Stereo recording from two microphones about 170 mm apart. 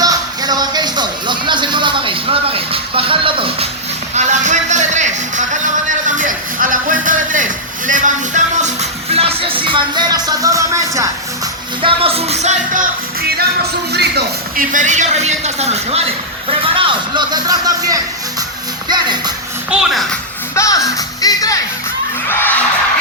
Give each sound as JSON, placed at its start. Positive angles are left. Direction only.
{"t": 0.0, "sound": "speech", "side_deg": -20}
{"t": 4.1, "sound": "music", "side_deg": -45}
{"t": 9.6, "sound": "speech", "side_deg": -25}
{"t": 11.8, "sound": "music", "side_deg": -30}
{"t": 13.9, "sound": "speech", "side_deg": -75}
{"t": 19.7, "sound": "a child's voice", "side_deg": 0}
{"t": 20.6, "sound": "speech", "side_deg": 20}
{"t": 22.3, "sound": "music", "side_deg": 15}